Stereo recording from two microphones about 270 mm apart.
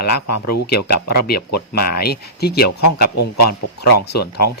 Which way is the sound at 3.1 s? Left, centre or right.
Left.